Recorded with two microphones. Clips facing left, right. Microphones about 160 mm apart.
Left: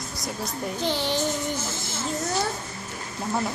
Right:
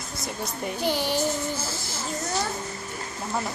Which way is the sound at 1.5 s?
20° left (ahead or behind).